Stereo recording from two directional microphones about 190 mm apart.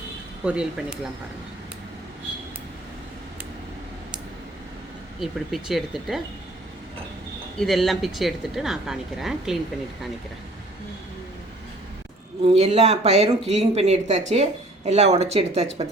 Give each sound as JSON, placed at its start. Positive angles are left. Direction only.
{"t": 0.4, "sound": "a woman's voice", "side_deg": -5}
{"t": 5.2, "sound": "a woman's voice", "side_deg": 0}
{"t": 7.6, "sound": "a woman's voice", "side_deg": 0}
{"t": 12.4, "sound": "speech", "side_deg": -30}